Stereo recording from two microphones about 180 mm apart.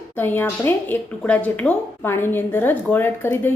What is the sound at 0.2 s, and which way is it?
Speech, 10° left (ahead or behind).